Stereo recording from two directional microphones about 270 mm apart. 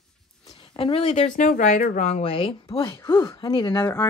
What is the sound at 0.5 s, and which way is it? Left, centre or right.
Speech, centre.